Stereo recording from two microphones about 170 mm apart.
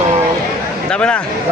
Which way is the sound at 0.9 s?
5° left (ahead or behind).